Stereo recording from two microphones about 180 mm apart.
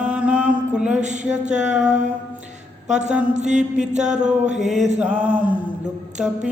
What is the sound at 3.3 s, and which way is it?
Mantra, 40° right (ahead or behind).